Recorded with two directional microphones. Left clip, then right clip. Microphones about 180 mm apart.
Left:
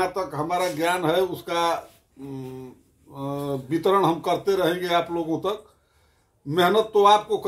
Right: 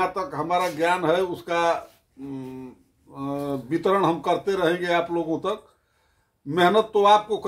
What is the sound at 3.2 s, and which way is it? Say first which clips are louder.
Speech: even; 5° left (ahead or behind).